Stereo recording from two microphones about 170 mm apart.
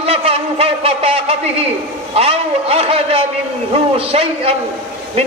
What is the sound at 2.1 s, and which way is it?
A man's voice, 35° right (ahead or behind).